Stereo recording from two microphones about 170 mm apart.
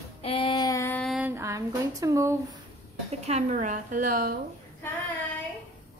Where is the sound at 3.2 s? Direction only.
45° right (ahead or behind).